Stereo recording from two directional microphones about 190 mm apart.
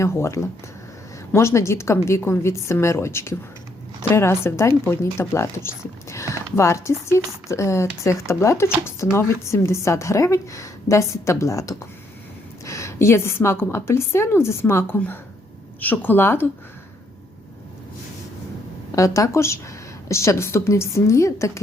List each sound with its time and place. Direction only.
0.0 s a woman's voice: 15° left (ahead or behind)
18.9 s a woman's voice: 15° left (ahead or behind)